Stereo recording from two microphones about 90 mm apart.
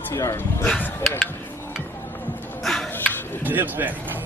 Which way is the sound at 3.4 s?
20° right (ahead or behind).